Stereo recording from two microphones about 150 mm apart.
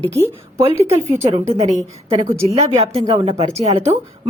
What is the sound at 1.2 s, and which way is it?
A woman's voice, 50° right (ahead or behind).